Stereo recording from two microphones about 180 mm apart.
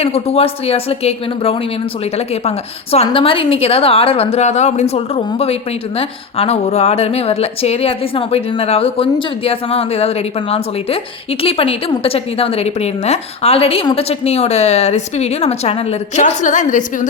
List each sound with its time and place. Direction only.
0.0 s a woman's voice: 35° left (ahead or behind)